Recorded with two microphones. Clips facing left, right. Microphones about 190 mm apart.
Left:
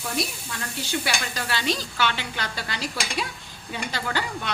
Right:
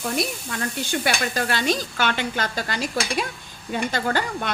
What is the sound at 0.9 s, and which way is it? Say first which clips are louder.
A woman's voice: right 3 dB; 50° right (ahead or behind).